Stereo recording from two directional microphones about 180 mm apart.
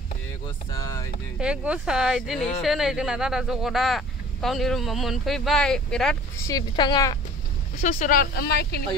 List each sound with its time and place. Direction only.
0.7 s speech: 15° left (ahead or behind)
1.4 s speech: 5° right (ahead or behind)
6.4 s speech: 20° left (ahead or behind)
7.8 s speech: 45° left (ahead or behind); by 8.8 s 60° left (ahead or behind)